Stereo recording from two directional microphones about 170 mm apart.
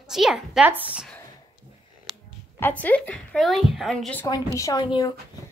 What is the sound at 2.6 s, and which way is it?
Speech, 10° left (ahead or behind).